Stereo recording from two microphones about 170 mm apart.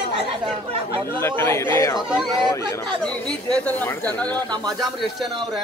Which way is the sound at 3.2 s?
5° left (ahead or behind).